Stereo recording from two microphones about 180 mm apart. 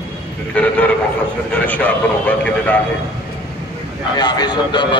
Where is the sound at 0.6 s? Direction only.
10° left (ahead or behind).